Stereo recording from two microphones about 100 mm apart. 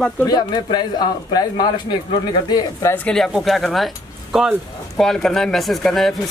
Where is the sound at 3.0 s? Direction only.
5° left (ahead or behind).